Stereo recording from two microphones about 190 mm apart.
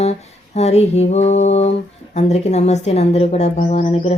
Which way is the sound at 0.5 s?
35° left (ahead or behind).